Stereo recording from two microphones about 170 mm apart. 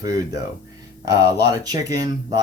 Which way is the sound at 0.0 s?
20° right (ahead or behind).